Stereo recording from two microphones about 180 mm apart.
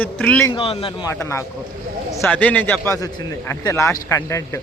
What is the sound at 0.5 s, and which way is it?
Speech, 30° left (ahead or behind).